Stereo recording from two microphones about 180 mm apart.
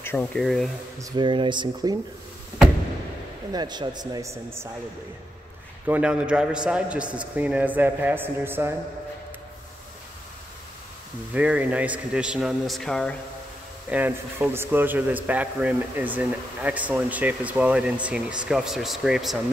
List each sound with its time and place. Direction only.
0.0 s a man's voice: 10° left (ahead or behind)
0.9 s speech: 25° right (ahead or behind)
3.5 s speech: 25° right (ahead or behind)
5.9 s a man's voice: 5° right (ahead or behind)
11.3 s a man's voice: 10° right (ahead or behind)
13.8 s a man's voice: 10° right (ahead or behind)